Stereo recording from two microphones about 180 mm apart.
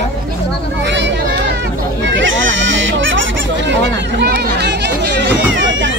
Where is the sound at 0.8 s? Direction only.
80° right.